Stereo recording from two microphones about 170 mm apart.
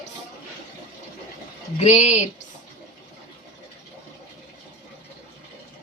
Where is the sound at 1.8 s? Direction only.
40° left (ahead or behind).